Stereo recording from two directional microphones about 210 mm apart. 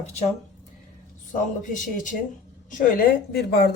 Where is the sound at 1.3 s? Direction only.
40° left (ahead or behind).